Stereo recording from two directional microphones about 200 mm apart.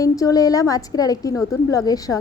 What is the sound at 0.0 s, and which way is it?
A woman's voice, 15° left (ahead or behind).